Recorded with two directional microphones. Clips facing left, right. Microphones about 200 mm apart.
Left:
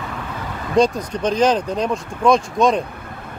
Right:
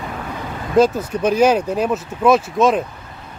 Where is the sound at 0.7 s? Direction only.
5° right (ahead or behind).